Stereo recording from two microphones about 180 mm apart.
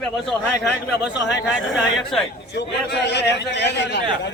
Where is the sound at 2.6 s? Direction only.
70° left (ahead or behind).